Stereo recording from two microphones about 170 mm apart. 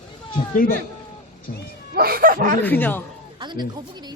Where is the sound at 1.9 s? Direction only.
60° right (ahead or behind).